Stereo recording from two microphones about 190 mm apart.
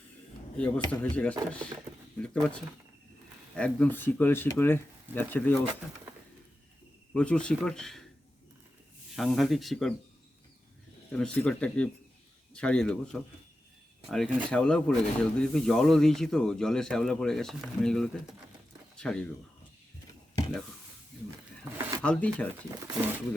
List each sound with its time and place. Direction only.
0.5 s speech: 5° left (ahead or behind)
7.1 s speech: 5° left (ahead or behind)
9.1 s speech: centre (ahead or behind)
11.1 s speech: 5° left (ahead or behind)
21.2 s a sound: 15° right (ahead or behind)
22.0 s speech: 5° left (ahead or behind)